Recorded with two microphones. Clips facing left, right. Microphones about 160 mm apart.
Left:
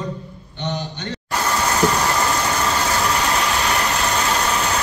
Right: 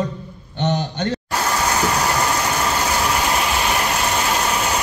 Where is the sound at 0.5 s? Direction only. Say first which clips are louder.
Right 6 dB; 45° right (ahead or behind).